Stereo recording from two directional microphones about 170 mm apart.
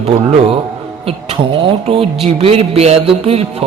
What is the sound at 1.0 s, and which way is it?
Speech, 35° right (ahead or behind).